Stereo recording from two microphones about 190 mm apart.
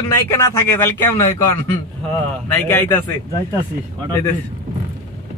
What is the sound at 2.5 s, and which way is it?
Speech, 10° left (ahead or behind).